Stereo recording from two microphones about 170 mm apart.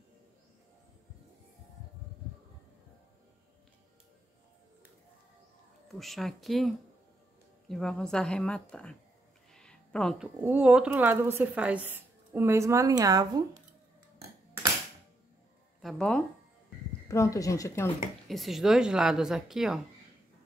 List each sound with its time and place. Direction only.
5.9 s a woman's voice: centre (ahead or behind); by 13.6 s 20° right (ahead or behind)
15.8 s speech: 5° left (ahead or behind)
17.1 s speech: 20° left (ahead or behind)
18.3 s a woman's voice: centre (ahead or behind)